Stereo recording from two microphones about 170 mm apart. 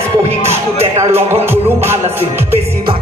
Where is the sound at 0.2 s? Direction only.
40° right (ahead or behind).